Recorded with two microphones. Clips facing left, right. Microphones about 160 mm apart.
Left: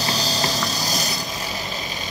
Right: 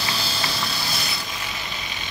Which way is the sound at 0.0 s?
40° left (ahead or behind).